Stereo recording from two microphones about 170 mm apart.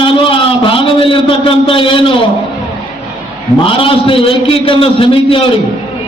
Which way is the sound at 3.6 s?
30° left (ahead or behind).